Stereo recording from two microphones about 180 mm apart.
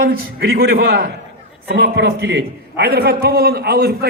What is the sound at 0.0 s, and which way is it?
A man's voice, 55° right (ahead or behind).